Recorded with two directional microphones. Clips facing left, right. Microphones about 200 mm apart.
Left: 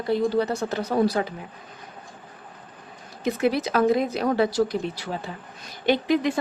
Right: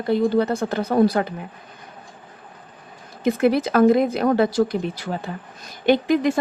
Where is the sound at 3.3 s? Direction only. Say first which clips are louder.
Right 5 dB; 55° right (ahead or behind).